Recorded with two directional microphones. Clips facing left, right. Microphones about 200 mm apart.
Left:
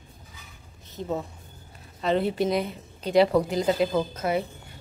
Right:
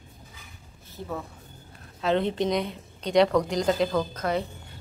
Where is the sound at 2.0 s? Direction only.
5° left (ahead or behind).